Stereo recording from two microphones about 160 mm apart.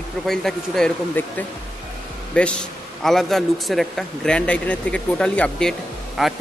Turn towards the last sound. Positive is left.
turn(degrees=0)  # may be behind; listen again after turning